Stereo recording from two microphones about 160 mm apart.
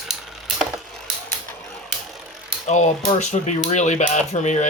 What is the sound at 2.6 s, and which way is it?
Speech, 45° left (ahead or behind).